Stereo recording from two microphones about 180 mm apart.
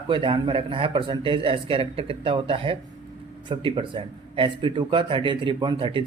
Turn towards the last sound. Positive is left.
turn(degrees=-25)  # may be behind; listen again after turning